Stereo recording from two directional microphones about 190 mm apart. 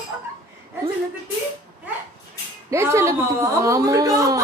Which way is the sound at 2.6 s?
15° right (ahead or behind).